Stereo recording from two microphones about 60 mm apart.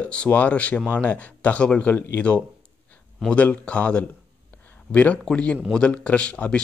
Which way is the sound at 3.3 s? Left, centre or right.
Left.